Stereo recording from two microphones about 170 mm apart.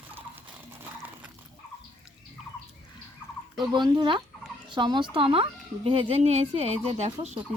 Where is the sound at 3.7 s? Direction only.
25° right (ahead or behind).